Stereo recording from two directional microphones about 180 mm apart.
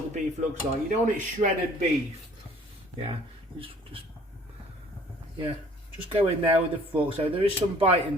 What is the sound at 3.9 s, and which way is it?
Vehicle, 30° right (ahead or behind).